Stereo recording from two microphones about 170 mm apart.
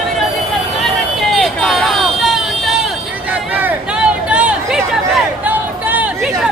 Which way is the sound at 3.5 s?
10° right (ahead or behind).